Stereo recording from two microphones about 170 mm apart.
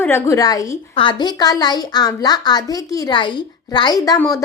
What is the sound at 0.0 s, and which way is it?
A woman's voice, 15° left (ahead or behind).